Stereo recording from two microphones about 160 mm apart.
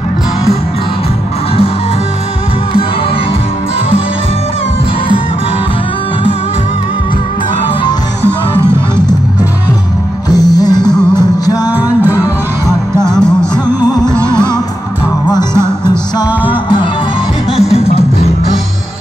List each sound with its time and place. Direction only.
8.3 s music: 15° right (ahead or behind)
10.3 s music: 25° left (ahead or behind)
11.7 s music: 10° right (ahead or behind)
13.0 s music: 5° left (ahead or behind)
13.7 s music: 25° left (ahead or behind)
15.2 s music: 25° left (ahead or behind)
17.6 s music: 40° left (ahead or behind)